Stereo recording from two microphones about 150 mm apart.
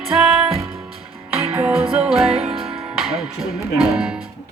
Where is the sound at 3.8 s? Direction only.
5° right (ahead or behind).